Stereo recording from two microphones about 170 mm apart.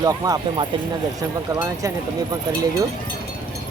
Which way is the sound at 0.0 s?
25° right (ahead or behind).